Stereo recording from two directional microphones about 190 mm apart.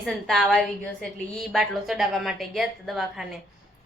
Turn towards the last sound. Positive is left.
turn(degrees=0)  # may be behind; listen again after turning